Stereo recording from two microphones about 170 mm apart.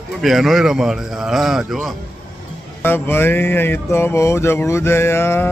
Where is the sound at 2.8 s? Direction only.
10° left (ahead or behind).